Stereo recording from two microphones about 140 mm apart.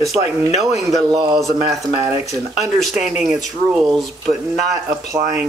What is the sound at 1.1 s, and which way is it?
Speech, 30° right (ahead or behind).